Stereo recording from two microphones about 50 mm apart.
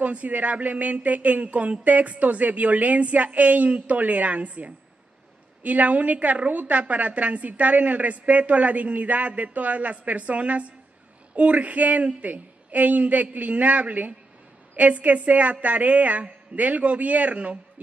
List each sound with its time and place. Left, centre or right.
0.0 s a woman's voice: right